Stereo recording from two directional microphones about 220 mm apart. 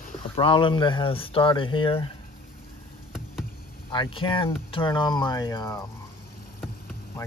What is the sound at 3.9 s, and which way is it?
Speech, 25° left (ahead or behind).